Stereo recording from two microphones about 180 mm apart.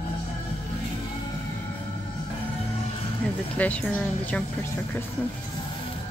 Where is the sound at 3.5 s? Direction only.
10° left (ahead or behind).